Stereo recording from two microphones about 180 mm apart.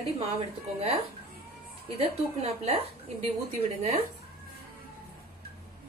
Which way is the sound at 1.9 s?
35° right (ahead or behind).